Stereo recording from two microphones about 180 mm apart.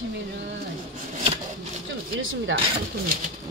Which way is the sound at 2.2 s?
90° right.